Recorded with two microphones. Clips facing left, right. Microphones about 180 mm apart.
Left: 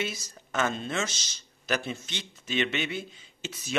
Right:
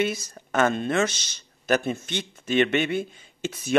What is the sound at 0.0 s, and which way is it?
Speech, 55° right (ahead or behind).